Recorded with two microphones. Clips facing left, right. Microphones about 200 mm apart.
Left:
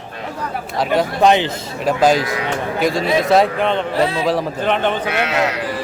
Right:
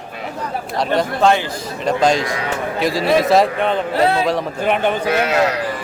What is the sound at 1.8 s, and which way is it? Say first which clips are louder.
Speech: left 1 dB; 5° left (ahead or behind).